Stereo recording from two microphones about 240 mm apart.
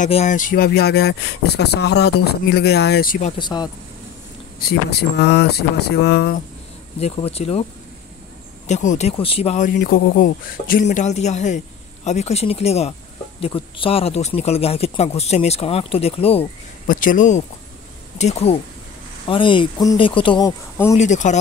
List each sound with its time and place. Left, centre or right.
0.0 s speech: left
3.3 s speech: centre
4.6 s speech: left
7.0 s speech: left
8.6 s speech: left
9.8 s speech: left; by 20.9 s centre
20.9 s speech: left